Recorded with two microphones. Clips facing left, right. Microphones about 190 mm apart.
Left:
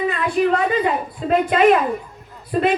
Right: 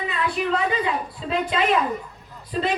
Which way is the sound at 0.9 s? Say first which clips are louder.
Left 6 dB; 55° left (ahead or behind).